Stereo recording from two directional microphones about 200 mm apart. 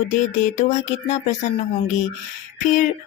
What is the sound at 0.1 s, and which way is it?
Speech, 40° left (ahead or behind).